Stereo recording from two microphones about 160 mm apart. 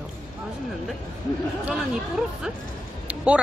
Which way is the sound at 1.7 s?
5° right (ahead or behind).